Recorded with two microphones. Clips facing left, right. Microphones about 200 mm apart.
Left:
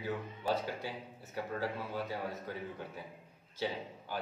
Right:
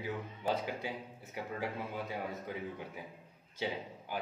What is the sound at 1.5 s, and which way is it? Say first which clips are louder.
A man's voice: left 1 dB; 15° right (ahead or behind).